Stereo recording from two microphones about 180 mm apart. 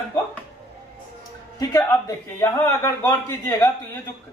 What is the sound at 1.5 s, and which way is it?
A man's voice, 20° left (ahead or behind).